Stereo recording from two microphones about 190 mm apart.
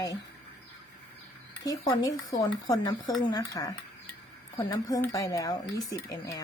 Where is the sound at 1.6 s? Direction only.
20° left (ahead or behind).